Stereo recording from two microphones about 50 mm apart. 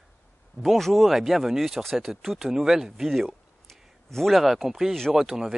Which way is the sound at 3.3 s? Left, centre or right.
Centre.